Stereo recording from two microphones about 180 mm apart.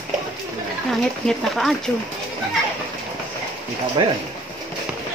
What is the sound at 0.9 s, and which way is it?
Speech, centre (ahead or behind).